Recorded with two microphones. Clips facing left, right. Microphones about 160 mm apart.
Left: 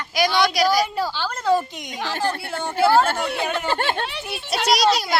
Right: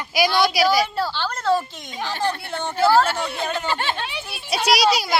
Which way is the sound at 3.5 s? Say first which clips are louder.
Left 2 dB; 50° left (ahead or behind).